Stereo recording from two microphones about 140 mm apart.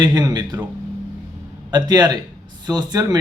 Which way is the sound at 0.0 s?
30° right (ahead or behind).